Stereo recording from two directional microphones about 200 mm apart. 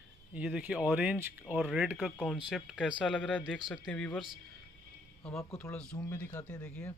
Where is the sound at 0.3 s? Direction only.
5° right (ahead or behind).